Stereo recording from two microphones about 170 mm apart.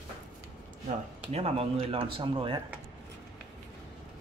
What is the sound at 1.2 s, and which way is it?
Speech, 35° right (ahead or behind).